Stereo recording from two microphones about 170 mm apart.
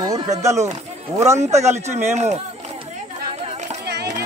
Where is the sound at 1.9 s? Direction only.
40° right (ahead or behind).